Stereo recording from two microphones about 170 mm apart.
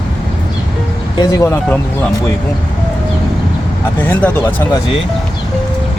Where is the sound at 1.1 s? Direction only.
15° left (ahead or behind).